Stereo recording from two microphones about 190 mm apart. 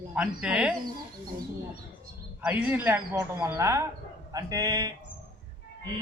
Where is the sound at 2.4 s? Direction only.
5° right (ahead or behind).